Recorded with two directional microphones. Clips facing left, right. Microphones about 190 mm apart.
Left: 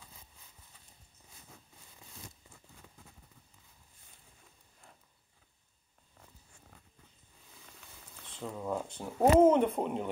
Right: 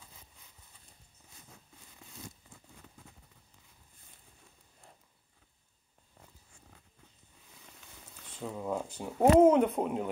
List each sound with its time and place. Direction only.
8.4 s speech: 5° right (ahead or behind)